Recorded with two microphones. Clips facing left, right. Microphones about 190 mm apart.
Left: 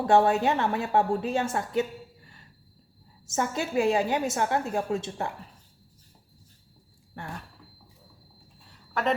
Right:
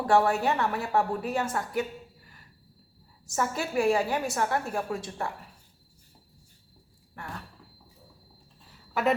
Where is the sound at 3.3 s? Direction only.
20° left (ahead or behind).